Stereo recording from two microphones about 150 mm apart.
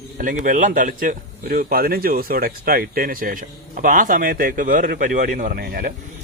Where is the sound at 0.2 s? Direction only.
60° right (ahead or behind); by 5.9 s 80° right.